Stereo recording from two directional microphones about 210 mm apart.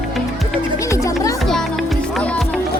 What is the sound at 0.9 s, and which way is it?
Music, 15° left (ahead or behind).